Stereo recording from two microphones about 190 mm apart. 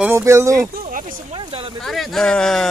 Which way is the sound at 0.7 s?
45° right (ahead or behind).